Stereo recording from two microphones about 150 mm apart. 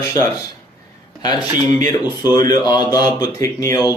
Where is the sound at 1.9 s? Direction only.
25° left (ahead or behind).